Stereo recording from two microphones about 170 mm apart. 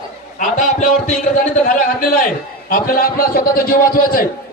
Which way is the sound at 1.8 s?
55° left (ahead or behind).